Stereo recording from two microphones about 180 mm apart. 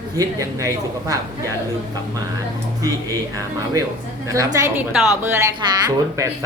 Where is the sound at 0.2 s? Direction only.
20° right (ahead or behind).